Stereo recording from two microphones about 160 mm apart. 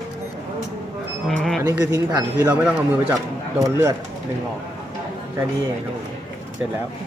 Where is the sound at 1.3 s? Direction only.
Centre (ahead or behind).